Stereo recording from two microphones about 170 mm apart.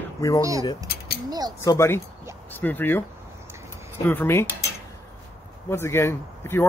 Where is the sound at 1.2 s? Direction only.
25° right (ahead or behind).